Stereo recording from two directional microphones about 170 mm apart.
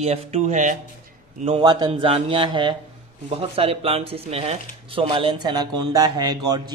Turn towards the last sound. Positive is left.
turn(degrees=-25)  # may be behind; listen again after turning